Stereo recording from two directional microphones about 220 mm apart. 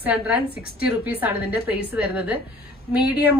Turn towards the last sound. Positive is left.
turn(degrees=-5)  # may be behind; listen again after turning